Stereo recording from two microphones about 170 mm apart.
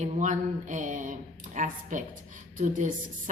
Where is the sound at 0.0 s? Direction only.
45° right (ahead or behind).